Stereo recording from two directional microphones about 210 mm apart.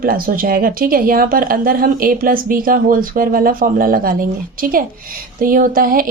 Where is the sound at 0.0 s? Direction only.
45° right (ahead or behind).